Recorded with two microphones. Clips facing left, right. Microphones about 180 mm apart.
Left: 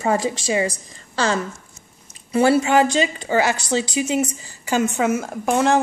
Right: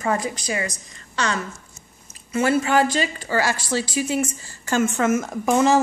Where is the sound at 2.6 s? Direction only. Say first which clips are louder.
Left 3 dB; 20° left (ahead or behind).